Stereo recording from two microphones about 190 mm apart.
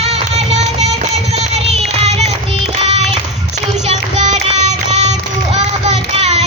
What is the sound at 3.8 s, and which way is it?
Music, 35° right (ahead or behind).